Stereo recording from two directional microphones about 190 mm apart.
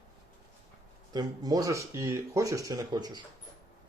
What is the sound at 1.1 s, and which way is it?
Speech, 20° right (ahead or behind).